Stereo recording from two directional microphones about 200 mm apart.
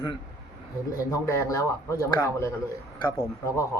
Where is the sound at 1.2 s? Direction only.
15° left (ahead or behind).